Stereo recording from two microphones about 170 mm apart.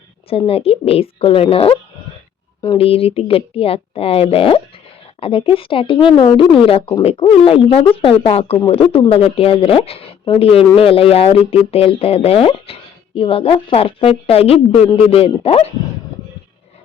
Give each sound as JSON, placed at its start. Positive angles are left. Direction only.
{"t": 0.3, "sound": "speech", "side_deg": 35}